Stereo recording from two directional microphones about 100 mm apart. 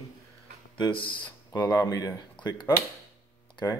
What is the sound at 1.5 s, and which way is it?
Speech, 35° left (ahead or behind).